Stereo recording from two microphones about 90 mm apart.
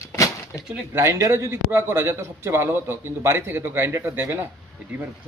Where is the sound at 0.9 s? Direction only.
30° right (ahead or behind).